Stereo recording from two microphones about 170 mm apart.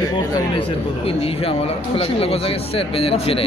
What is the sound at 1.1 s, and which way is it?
Speech, 35° left (ahead or behind).